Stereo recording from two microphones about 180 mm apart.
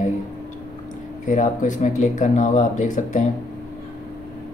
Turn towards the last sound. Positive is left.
turn(degrees=45)  # may be behind; listen again after turning